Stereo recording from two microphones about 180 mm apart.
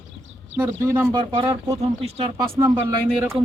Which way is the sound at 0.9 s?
15° right (ahead or behind).